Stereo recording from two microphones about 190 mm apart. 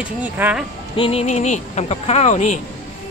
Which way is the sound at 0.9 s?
30° left (ahead or behind).